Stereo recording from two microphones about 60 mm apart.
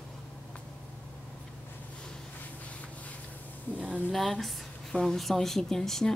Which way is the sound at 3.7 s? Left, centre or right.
Right.